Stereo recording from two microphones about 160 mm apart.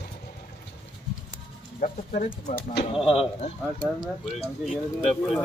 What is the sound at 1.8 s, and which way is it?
Speech, 50° left (ahead or behind).